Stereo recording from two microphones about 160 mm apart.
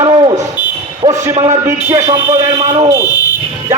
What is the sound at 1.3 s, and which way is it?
Speech, 40° right (ahead or behind).